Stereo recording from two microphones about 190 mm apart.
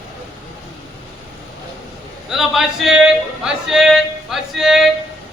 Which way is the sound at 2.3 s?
Centre (ahead or behind).